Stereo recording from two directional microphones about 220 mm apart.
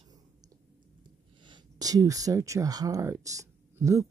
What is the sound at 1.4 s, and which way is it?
Speech, 20° right (ahead or behind).